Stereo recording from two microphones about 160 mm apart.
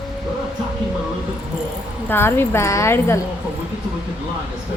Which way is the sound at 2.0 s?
15° left (ahead or behind).